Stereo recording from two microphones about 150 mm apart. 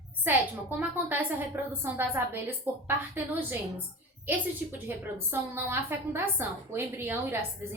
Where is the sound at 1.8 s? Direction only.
15° right (ahead or behind).